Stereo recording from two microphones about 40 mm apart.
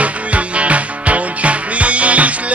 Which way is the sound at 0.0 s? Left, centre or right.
Right.